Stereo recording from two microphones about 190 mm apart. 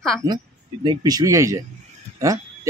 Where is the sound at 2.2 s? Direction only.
15° right (ahead or behind).